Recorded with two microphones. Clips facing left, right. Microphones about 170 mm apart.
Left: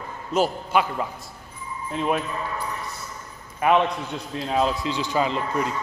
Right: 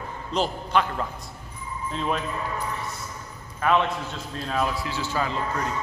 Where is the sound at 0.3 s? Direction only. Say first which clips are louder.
Left 3 dB; 10° left (ahead or behind).